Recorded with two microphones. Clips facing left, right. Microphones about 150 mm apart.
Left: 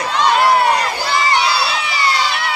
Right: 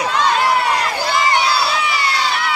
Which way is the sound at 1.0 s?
50° right (ahead or behind).